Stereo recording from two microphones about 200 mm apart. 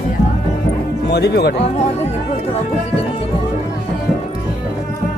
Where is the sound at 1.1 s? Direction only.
55° left (ahead or behind).